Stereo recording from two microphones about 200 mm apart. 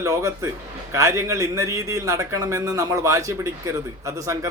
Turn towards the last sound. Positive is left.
turn(degrees=-15)  # may be behind; listen again after turning